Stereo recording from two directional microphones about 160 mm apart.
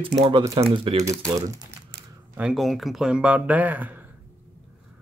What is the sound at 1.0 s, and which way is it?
Speech, 20° right (ahead or behind).